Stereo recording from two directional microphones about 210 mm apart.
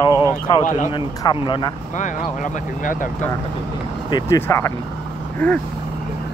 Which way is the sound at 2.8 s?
40° left (ahead or behind).